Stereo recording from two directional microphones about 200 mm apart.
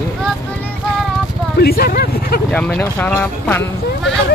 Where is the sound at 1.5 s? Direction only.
50° left (ahead or behind).